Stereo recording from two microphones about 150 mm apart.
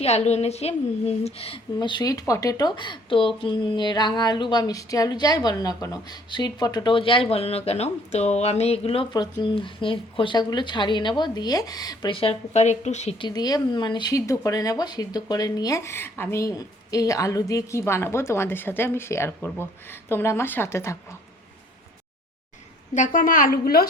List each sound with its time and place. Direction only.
0.0 s a woman's voice: 45° left (ahead or behind)
9.1 s a woman's voice: 30° left (ahead or behind)
12.1 s speech: 40° left (ahead or behind)
13.1 s speech: 30° left (ahead or behind)
23.0 s a woman's voice: 65° left (ahead or behind); by 23.9 s 90° left